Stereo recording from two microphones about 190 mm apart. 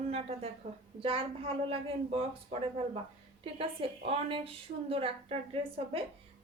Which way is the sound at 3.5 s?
30° right (ahead or behind).